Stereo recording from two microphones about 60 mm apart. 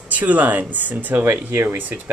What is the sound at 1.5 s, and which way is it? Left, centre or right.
Speech, right.